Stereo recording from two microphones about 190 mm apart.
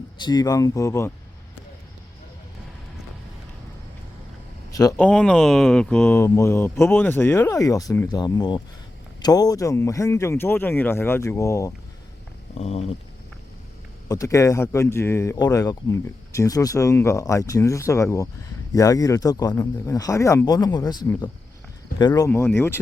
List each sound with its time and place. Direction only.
0.2 s speech: 20° left (ahead or behind)
4.7 s a man's voice: 20° left (ahead or behind)
4.9 s speech: 5° left (ahead or behind)
12.5 s a sound: 35° left (ahead or behind)
14.1 s speech: 15° left (ahead or behind)